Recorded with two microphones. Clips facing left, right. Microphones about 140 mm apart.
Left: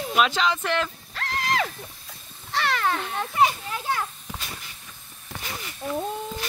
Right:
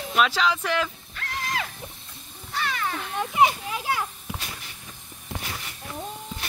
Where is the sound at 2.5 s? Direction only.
70° left (ahead or behind).